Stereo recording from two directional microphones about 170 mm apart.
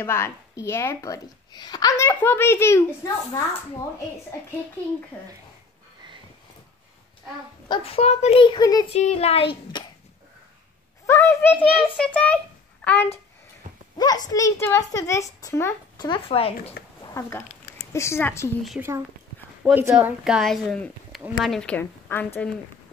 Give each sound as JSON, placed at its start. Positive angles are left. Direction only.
{"t": 0.0, "sound": "a woman's voice", "side_deg": 15}
{"t": 7.6, "sound": "speech", "side_deg": 30}
{"t": 8.9, "sound": "speech", "side_deg": 40}
{"t": 11.1, "sound": "a woman's voice", "side_deg": 15}
{"t": 13.9, "sound": "a woman's voice", "side_deg": 25}
{"t": 16.1, "sound": "speech", "side_deg": 35}
{"t": 17.1, "sound": "a woman's voice", "side_deg": 15}
{"t": 18.8, "sound": "a woman's voice", "side_deg": -15}